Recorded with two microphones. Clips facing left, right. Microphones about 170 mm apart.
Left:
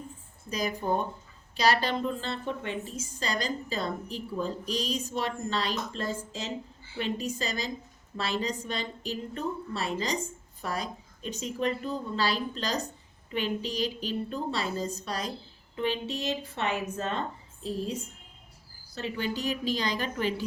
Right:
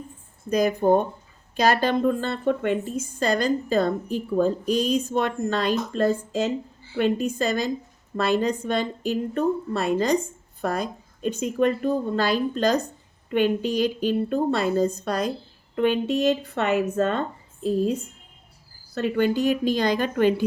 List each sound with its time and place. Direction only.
0.5 s a woman's voice: 55° right (ahead or behind)
18.9 s a woman's voice: 60° right (ahead or behind)